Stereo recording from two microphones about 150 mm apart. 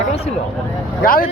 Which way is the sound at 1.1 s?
70° left (ahead or behind).